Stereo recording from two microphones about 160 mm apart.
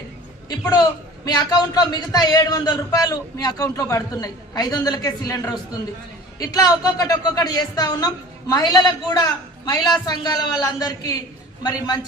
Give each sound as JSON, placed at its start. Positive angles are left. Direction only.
{"t": 0.4, "sound": "a man's voice", "side_deg": 25}